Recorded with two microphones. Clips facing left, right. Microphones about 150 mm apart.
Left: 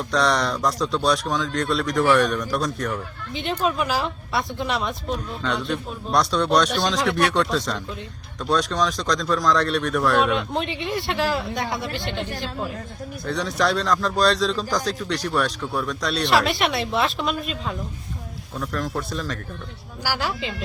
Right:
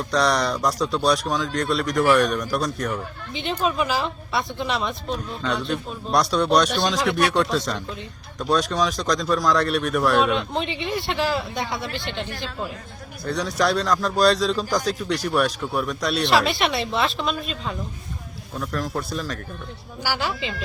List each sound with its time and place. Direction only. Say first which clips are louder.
0.1 s speech: even; centre (ahead or behind)
11.9 s speech: left 2 dB; 45° left (ahead or behind)
13.2 s speech: right 1 dB; centre (ahead or behind)
16.5 s speech: even; 5° left (ahead or behind)